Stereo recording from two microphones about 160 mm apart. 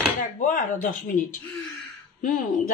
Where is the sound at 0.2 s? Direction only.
55° left (ahead or behind).